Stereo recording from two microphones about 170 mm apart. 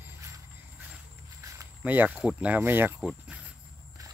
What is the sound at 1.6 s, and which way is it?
Speech, 10° right (ahead or behind).